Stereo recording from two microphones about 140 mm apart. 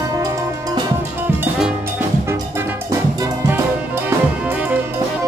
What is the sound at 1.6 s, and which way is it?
Music, 15° right (ahead or behind).